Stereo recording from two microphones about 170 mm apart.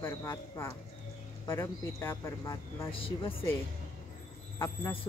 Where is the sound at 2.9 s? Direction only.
30° left (ahead or behind).